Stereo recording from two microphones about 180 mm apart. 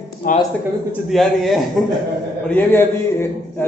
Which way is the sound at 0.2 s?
45° left (ahead or behind).